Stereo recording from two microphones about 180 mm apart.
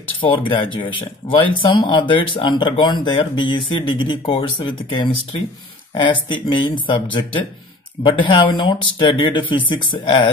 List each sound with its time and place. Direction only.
0.2 s speech: 30° left (ahead or behind)